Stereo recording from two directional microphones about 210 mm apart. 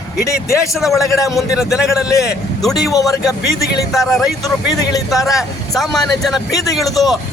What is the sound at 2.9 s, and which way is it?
Speech, 15° left (ahead or behind).